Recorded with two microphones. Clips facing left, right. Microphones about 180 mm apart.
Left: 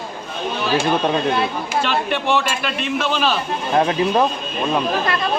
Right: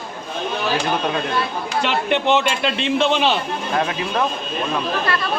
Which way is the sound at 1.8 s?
20° right (ahead or behind).